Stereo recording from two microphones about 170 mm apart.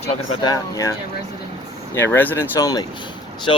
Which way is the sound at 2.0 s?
10° left (ahead or behind).